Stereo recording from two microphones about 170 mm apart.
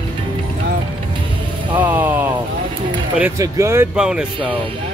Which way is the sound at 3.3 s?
20° right (ahead or behind).